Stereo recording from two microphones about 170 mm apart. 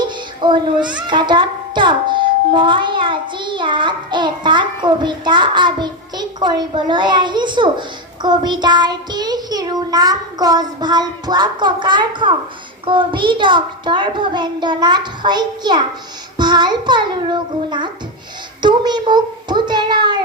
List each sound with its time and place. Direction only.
0.4 s a child's voice: 25° right (ahead or behind)